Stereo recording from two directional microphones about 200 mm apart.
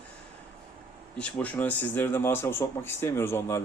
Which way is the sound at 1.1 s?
5° left (ahead or behind).